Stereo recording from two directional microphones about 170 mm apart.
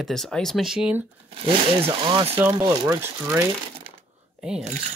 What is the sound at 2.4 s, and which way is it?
Speech, 15° right (ahead or behind).